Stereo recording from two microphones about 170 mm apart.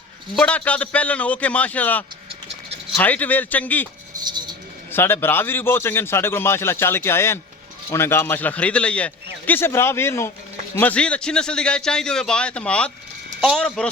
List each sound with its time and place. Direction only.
0.3 s a man's voice: 10° left (ahead or behind)
4.2 s a sound: 25° right (ahead or behind)
4.9 s a man's voice: 15° left (ahead or behind)